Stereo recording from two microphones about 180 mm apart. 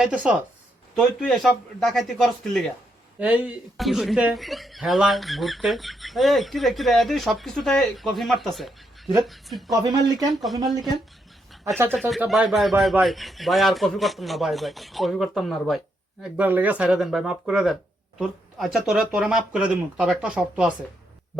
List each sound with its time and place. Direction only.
0.0 s speech: 5° right (ahead or behind)
3.2 s speech: 10° right (ahead or behind)
9.8 s speech: 20° right (ahead or behind)
12.1 s speech: centre (ahead or behind)